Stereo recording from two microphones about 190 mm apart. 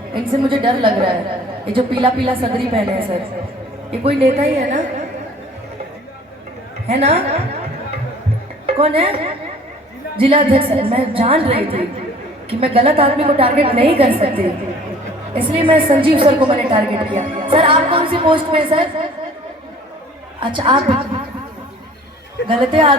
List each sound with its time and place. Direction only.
0.1 s a woman's voice: 25° right (ahead or behind)
6.8 s a woman's voice: 35° right (ahead or behind)
8.6 s a woman's voice: 30° right (ahead or behind)
10.2 s a woman's voice: 30° right (ahead or behind)
20.4 s a woman's voice: 25° right (ahead or behind)
22.4 s a woman's voice: 25° right (ahead or behind)